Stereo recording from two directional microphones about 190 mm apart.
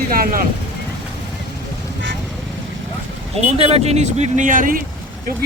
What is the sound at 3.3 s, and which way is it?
A man's voice, 30° right (ahead or behind).